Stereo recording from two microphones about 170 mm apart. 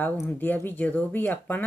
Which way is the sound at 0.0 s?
10° left (ahead or behind).